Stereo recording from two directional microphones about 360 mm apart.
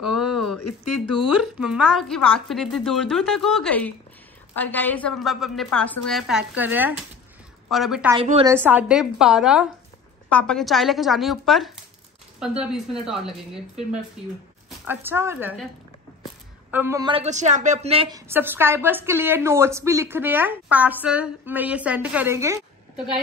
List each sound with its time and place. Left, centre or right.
0.0 s a sound: centre
0.6 s speech: left
1.1 s a woman's voice: centre
8.2 s a woman's voice: centre
16.7 s a woman's voice: centre